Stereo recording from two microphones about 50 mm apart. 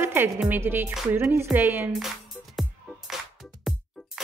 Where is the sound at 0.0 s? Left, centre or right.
Right.